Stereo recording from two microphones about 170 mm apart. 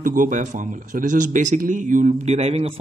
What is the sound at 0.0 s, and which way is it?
Speech, 50° right (ahead or behind).